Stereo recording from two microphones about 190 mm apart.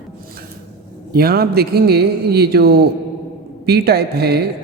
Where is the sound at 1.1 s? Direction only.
55° right (ahead or behind).